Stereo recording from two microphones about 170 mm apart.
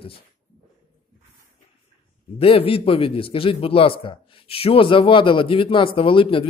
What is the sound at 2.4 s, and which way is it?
A man's voice, 35° left (ahead or behind).